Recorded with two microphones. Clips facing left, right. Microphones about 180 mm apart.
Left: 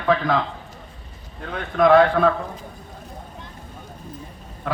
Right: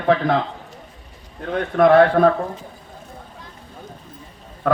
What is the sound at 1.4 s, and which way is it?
Speech, 55° right (ahead or behind).